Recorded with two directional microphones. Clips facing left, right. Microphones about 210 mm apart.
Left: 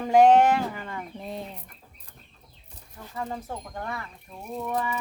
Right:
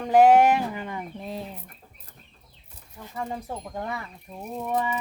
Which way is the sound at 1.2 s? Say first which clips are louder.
Right 1 dB; centre (ahead or behind).